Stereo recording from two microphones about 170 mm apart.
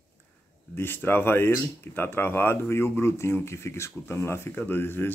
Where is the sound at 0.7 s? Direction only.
10° left (ahead or behind).